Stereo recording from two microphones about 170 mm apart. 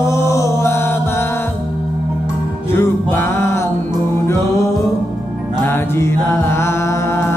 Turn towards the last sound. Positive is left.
turn(degrees=15)  # may be behind; listen again after turning